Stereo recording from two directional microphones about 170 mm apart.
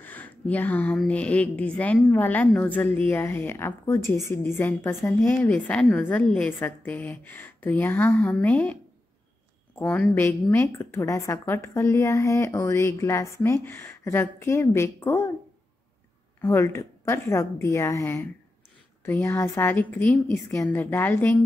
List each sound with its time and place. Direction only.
0.0 s a woman's voice: 10° left (ahead or behind)
9.8 s a woman's voice: 10° left (ahead or behind)
16.3 s a woman's voice: 15° left (ahead or behind)